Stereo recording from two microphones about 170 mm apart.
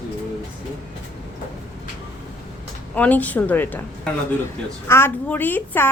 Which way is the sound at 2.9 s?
10° left (ahead or behind).